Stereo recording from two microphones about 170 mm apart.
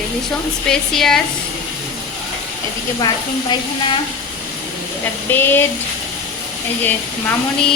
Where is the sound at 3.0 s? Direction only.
25° left (ahead or behind).